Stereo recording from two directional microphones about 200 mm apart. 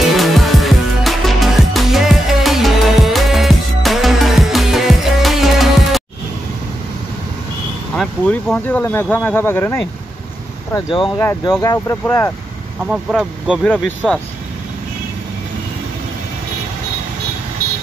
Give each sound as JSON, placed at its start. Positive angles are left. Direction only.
{"t": 0.2, "sound": "music", "side_deg": 0}
{"t": 7.9, "sound": "speech", "side_deg": 5}
{"t": 12.8, "sound": "speech", "side_deg": -5}